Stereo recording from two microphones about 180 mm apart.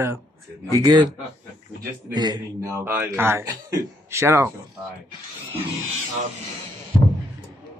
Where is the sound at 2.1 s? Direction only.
25° right (ahead or behind).